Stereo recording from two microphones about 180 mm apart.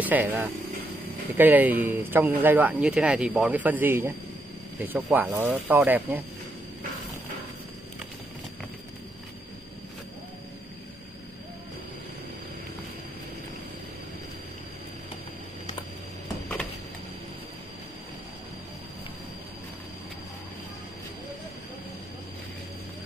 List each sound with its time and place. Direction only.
0.0 s speech: 10° right (ahead or behind)